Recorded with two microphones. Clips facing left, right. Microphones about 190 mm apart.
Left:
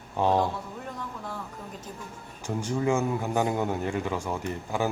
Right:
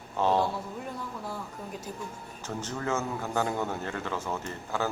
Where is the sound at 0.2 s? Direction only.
15° left (ahead or behind).